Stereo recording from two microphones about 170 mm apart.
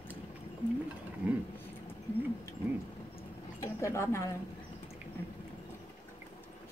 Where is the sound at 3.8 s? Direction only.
15° left (ahead or behind).